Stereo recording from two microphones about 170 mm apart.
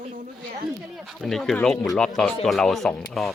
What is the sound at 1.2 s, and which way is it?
Speech, 5° left (ahead or behind).